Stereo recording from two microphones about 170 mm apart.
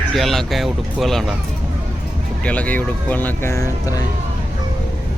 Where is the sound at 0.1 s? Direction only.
Centre (ahead or behind).